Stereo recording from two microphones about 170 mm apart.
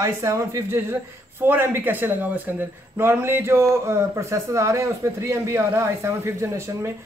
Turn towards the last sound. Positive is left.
turn(degrees=-15)  # may be behind; listen again after turning